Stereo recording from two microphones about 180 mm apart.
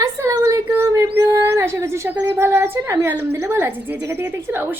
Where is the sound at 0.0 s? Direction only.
15° right (ahead or behind).